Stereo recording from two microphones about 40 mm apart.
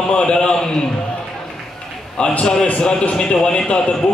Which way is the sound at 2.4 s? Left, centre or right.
Centre.